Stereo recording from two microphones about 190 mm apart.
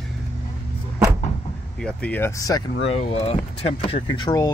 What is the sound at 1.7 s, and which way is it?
Speech, 5° left (ahead or behind).